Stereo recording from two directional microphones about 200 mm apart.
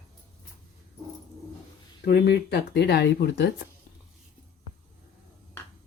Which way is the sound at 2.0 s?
55° left (ahead or behind).